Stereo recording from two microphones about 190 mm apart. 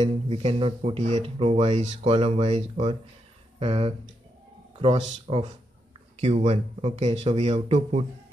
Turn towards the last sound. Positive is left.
turn(degrees=-35)  # may be behind; listen again after turning